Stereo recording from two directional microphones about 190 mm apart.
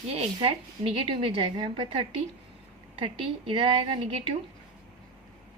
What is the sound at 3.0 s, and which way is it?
A woman's voice, 30° right (ahead or behind).